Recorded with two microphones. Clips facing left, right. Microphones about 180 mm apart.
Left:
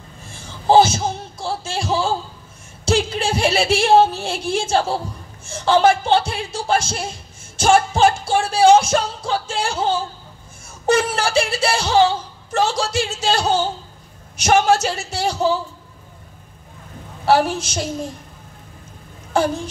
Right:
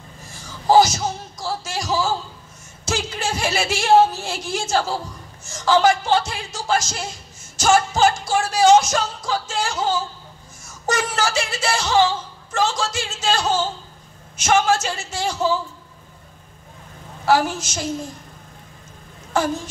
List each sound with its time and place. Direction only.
0.3 s a sound: 25° left (ahead or behind)
2.8 s speech: 30° left (ahead or behind)
17.2 s speech: 30° left (ahead or behind)
19.3 s speech: 30° left (ahead or behind)